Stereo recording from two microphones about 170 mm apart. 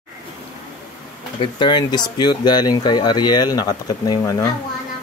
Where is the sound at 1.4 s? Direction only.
25° left (ahead or behind).